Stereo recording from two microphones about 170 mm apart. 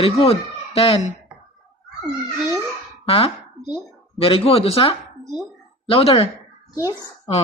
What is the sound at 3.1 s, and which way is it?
A woman's voice, 30° left (ahead or behind).